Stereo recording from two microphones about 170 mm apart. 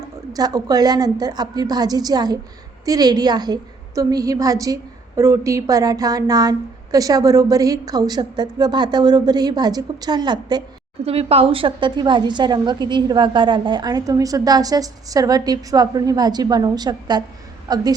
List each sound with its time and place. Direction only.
0.3 s a woman's voice: 20° right (ahead or behind)
11.0 s a woman's voice: 35° right (ahead or behind)